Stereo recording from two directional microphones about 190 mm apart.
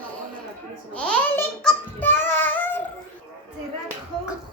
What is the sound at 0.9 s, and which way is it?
Child singing, 5° left (ahead or behind).